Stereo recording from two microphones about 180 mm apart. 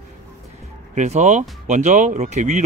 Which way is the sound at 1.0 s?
40° right (ahead or behind).